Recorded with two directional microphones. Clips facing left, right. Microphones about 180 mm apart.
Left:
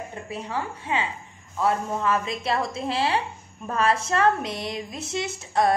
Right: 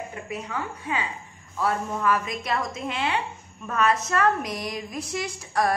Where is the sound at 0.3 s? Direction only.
30° left (ahead or behind).